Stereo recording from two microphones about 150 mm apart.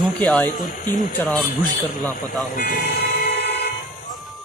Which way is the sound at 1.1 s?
10° left (ahead or behind).